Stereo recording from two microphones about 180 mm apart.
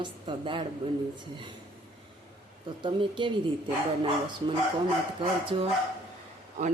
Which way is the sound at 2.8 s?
25° right (ahead or behind).